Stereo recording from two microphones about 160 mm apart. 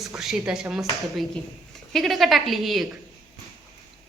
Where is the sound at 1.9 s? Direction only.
Centre (ahead or behind).